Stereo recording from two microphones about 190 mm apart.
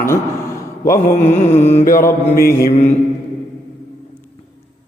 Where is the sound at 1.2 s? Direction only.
35° left (ahead or behind).